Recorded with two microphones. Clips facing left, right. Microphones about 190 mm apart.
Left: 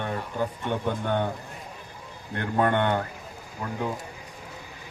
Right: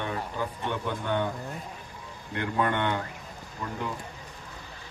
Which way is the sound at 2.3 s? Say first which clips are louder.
Left 4 dB; 50° left (ahead or behind).